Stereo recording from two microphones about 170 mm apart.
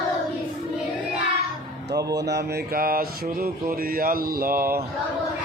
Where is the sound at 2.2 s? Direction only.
70° right (ahead or behind).